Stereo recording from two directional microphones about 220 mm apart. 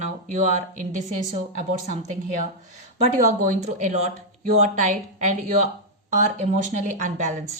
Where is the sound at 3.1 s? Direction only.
35° right (ahead or behind).